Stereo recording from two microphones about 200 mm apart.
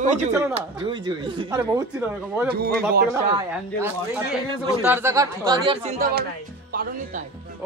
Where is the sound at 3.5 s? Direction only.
5° right (ahead or behind).